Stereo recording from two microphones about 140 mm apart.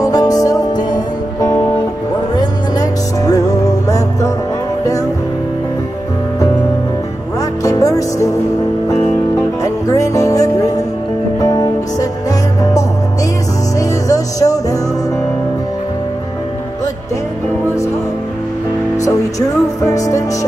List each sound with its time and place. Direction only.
0.0 s music: 25° left (ahead or behind)
7.6 s music: 25° left (ahead or behind)
9.6 s music: 25° left (ahead or behind)
19.8 s music: 25° left (ahead or behind)